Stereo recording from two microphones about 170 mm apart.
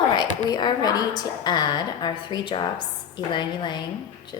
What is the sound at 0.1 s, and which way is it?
A woman's voice, 25° left (ahead or behind).